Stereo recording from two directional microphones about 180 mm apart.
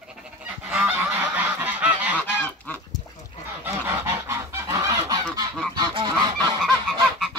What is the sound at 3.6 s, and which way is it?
Goose, 15° right (ahead or behind).